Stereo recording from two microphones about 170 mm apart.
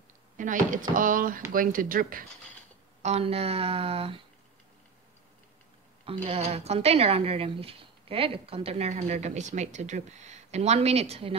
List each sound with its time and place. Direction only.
0.4 s speech: 50° right (ahead or behind)
3.0 s a woman's voice: 40° right (ahead or behind)
6.0 s a woman's voice: 35° right (ahead or behind)